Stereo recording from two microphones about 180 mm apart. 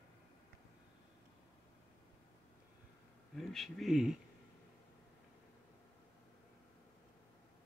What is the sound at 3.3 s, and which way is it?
Speech, centre (ahead or behind).